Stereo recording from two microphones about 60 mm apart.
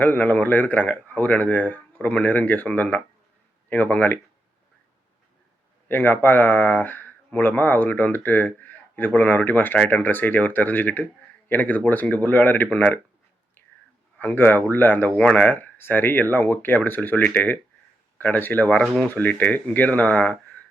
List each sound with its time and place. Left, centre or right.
0.0 s speech: left
5.9 s speech: left
14.2 s speech: left